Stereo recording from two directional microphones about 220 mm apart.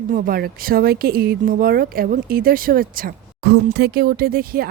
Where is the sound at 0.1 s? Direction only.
40° right (ahead or behind).